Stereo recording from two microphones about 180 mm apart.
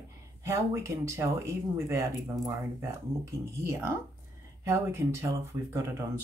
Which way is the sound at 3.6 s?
15° right (ahead or behind).